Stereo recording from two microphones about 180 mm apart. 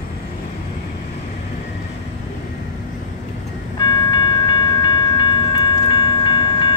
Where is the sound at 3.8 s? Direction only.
25° left (ahead or behind).